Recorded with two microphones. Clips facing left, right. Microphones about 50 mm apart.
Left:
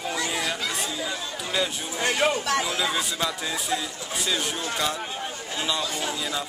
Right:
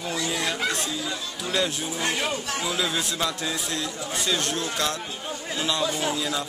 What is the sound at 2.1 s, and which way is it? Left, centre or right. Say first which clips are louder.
Speech: left 5 dB; left.